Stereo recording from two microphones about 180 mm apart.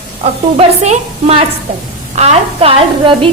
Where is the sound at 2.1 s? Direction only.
35° right (ahead or behind).